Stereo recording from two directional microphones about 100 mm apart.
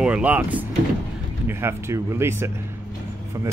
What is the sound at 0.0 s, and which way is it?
Speech, 10° right (ahead or behind).